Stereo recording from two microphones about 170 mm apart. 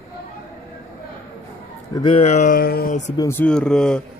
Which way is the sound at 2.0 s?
40° left (ahead or behind).